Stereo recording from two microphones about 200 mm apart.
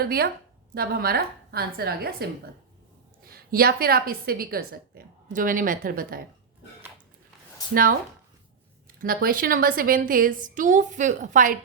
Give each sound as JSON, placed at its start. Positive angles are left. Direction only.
{"t": 0.0, "sound": "a woman's voice", "side_deg": -50}
{"t": 7.7, "sound": "a woman's voice", "side_deg": -45}
{"t": 9.0, "sound": "a woman's voice", "side_deg": -45}